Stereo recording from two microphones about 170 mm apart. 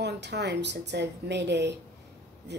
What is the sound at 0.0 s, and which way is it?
Speech, 80° right.